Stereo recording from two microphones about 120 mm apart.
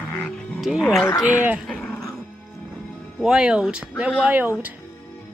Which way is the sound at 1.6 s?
10° left (ahead or behind).